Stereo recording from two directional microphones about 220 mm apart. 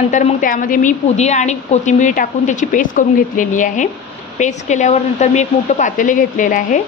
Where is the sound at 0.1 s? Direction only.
35° left (ahead or behind).